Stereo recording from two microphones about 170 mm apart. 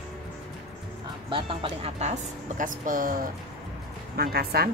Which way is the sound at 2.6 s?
55° right (ahead or behind).